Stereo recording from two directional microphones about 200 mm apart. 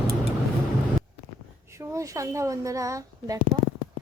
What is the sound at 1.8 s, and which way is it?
Speech, 15° right (ahead or behind).